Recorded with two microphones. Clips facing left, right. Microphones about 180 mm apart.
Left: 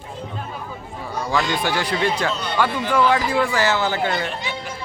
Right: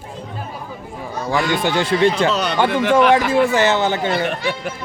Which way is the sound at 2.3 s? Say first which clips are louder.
Right 7 dB; 75° right (ahead or behind).